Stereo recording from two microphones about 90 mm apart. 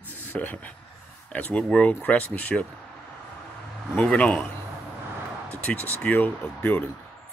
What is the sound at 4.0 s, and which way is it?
Speech, 15° left (ahead or behind).